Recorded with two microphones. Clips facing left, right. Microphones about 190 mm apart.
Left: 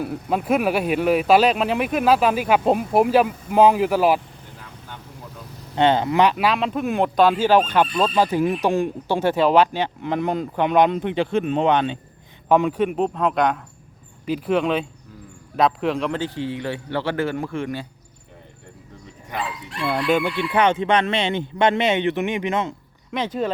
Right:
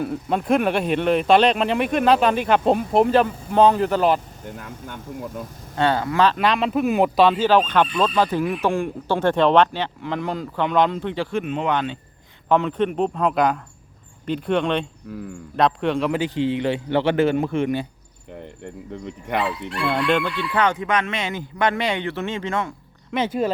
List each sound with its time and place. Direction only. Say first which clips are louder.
0.0 s speech: even; 5° left (ahead or behind)
4.5 s a sound: right 4 dB; 45° right (ahead or behind)
5.7 s speech: left 3 dB; 20° left (ahead or behind)
6.3 s speech: right 1 dB; 5° left (ahead or behind)
7.3 s speech: even; 10° left (ahead or behind)
11.4 s speech: left 5 dB; 35° left (ahead or behind)
11.7 s speech: left 3 dB; 20° left (ahead or behind); by 14.8 s 5° left (ahead or behind)
15.1 s speech: right 11 dB; 70° right (ahead or behind)
15.5 s speech: even; centre (ahead or behind)
16.1 s a man's voice: right 4 dB; 15° right (ahead or behind)
19.9 s speech: left 1 dB; 5° left (ahead or behind)
23.1 s speech: right 2 dB; 5° right (ahead or behind)